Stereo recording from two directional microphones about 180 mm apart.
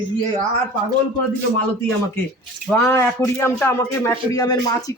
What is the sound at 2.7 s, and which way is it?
A man's voice, 10° left (ahead or behind).